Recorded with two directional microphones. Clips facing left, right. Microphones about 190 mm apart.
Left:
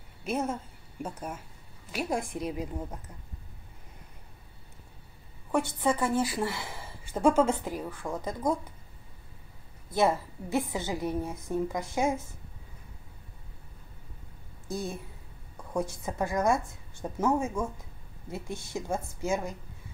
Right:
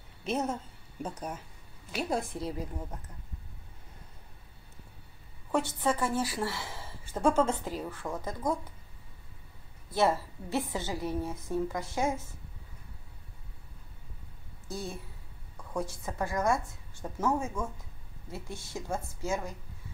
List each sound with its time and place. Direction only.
0.2 s a woman's voice: 10° left (ahead or behind)
5.5 s a woman's voice: 15° left (ahead or behind)
9.9 s a woman's voice: 15° left (ahead or behind)
14.7 s a woman's voice: 20° left (ahead or behind)